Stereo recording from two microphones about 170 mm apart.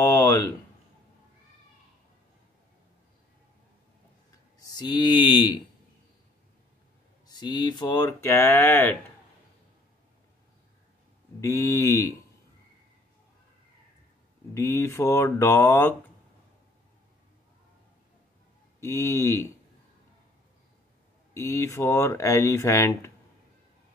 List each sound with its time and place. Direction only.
0.0 s a sound: 20° left (ahead or behind)
4.6 s speech: 25° left (ahead or behind)
7.2 s speech: 25° left (ahead or behind)
11.4 s speech: 20° left (ahead or behind)
14.5 s speech: 15° left (ahead or behind)
18.8 s speech: 15° left (ahead or behind)
21.3 s speech: 15° left (ahead or behind)